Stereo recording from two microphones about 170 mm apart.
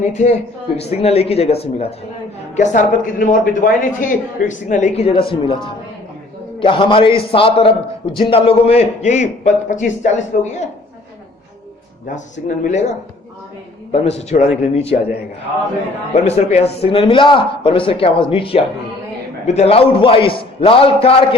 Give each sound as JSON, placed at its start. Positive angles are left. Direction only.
{"t": 0.0, "sound": "a man's voice", "side_deg": 45}
{"t": 2.6, "sound": "a man's voice", "side_deg": 45}
{"t": 6.6, "sound": "a man's voice", "side_deg": 30}
{"t": 12.6, "sound": "a man's voice", "side_deg": 45}
{"t": 16.1, "sound": "a man's voice", "side_deg": 40}